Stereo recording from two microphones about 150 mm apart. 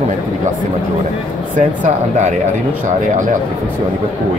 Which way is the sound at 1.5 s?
55° right (ahead or behind).